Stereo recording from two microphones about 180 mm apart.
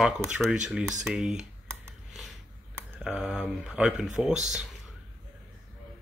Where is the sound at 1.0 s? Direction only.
5° right (ahead or behind).